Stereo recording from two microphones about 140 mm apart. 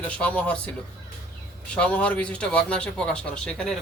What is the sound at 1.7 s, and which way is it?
Speech, 10° left (ahead or behind).